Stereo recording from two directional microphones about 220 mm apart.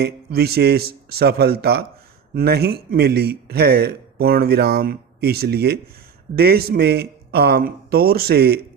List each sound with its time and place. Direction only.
0.0 s a man's voice: 45° right (ahead or behind)